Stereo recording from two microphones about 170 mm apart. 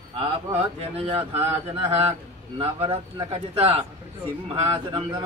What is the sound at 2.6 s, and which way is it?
Speech, 35° right (ahead or behind).